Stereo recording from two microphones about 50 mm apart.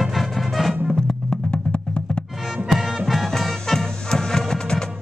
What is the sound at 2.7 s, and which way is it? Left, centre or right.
Music, centre.